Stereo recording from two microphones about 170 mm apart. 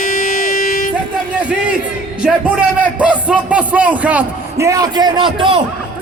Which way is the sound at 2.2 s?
5° right (ahead or behind).